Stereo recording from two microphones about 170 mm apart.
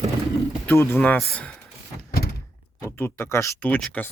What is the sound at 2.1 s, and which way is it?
Door, 65° left (ahead or behind).